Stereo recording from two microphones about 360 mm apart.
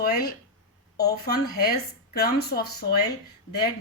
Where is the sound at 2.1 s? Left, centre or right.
Left.